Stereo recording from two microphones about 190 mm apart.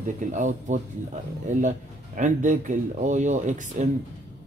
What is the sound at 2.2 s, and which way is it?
Speech, 40° right (ahead or behind).